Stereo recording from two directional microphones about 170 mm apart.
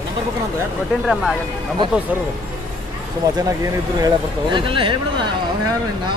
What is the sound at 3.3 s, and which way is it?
Speech, 20° right (ahead or behind).